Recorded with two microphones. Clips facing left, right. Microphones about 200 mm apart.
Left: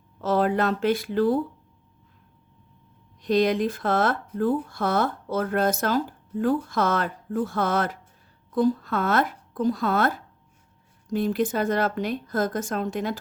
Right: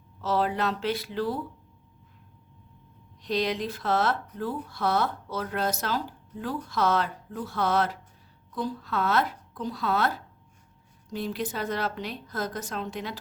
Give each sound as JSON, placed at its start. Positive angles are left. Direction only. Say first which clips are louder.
{"t": 0.2, "sound": "speech", "louder": "left 4 dB", "side_deg": 50}
{"t": 3.2, "sound": "speech", "louder": "left 7 dB", "side_deg": 50}